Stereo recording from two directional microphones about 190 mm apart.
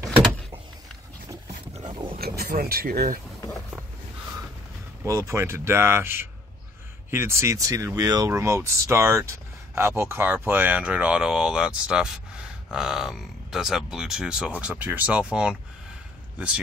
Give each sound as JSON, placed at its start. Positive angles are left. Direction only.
{"t": 1.8, "sound": "roaring cats", "side_deg": -25}
{"t": 2.1, "sound": "speech", "side_deg": -55}
{"t": 5.0, "sound": "speech", "side_deg": -15}